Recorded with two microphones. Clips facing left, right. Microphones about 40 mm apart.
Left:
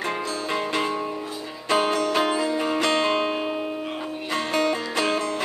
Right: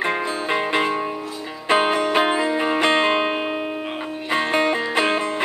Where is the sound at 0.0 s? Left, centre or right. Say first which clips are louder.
Right 5 dB; right.